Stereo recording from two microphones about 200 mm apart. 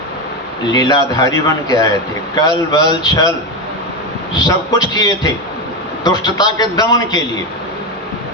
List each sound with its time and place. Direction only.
0.7 s a man's voice: 20° left (ahead or behind)
4.4 s a man's voice: 20° left (ahead or behind)